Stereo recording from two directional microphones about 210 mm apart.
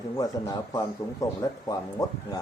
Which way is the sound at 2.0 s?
15° left (ahead or behind).